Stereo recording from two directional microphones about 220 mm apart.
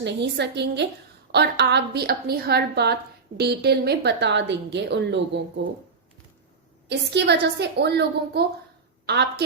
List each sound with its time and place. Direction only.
0.0 s a woman's voice: 50° right (ahead or behind)
6.8 s a woman's voice: 50° right (ahead or behind)